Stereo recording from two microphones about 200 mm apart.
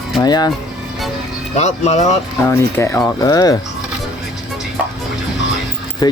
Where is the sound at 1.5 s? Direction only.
35° left (ahead or behind).